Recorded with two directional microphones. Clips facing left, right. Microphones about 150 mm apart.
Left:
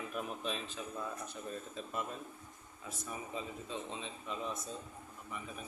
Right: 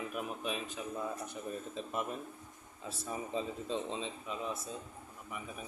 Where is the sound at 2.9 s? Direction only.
30° right (ahead or behind).